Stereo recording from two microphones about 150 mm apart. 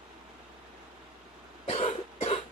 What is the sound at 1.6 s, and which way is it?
Cough, 45° left (ahead or behind).